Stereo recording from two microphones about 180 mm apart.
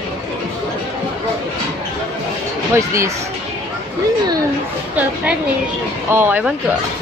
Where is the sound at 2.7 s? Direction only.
15° right (ahead or behind).